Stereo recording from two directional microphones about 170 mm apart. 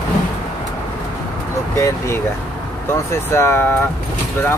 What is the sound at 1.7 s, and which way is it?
Speech, 15° left (ahead or behind).